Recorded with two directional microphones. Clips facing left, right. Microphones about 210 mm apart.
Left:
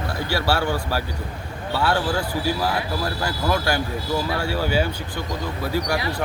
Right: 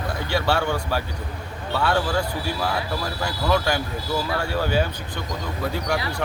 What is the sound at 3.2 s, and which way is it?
Speech, 5° left (ahead or behind).